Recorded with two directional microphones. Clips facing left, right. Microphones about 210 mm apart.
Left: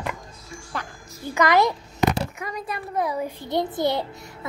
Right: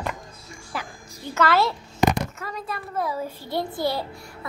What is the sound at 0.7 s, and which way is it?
Speech, 5° right (ahead or behind).